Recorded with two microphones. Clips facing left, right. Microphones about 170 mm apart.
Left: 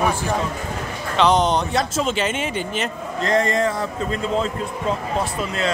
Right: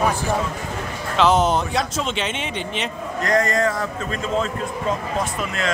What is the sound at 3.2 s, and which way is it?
A man's voice, 25° left (ahead or behind).